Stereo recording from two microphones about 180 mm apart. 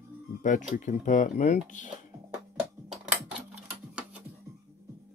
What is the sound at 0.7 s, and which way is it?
Speech, 45° left (ahead or behind).